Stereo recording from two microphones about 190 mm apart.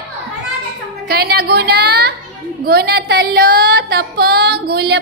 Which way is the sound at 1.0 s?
55° right (ahead or behind).